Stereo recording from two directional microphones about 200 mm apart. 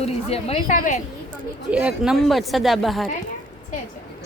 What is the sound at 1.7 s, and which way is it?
Speech, 5° right (ahead or behind).